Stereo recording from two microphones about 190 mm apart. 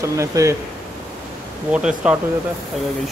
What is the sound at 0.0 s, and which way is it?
Speech, 15° right (ahead or behind).